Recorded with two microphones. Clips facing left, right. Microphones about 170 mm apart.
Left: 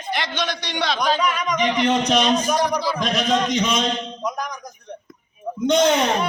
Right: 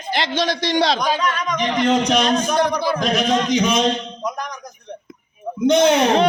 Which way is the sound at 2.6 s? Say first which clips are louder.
Right 3 dB; 60° right (ahead or behind).